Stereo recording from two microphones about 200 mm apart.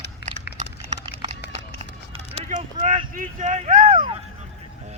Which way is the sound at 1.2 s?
30° right (ahead or behind).